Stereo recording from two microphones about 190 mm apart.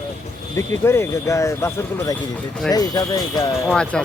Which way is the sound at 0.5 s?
15° left (ahead or behind).